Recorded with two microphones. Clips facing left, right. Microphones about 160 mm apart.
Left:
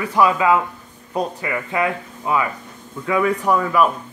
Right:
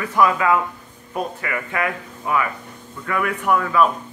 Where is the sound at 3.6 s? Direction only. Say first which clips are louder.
Right 1 dB; 5° left (ahead or behind).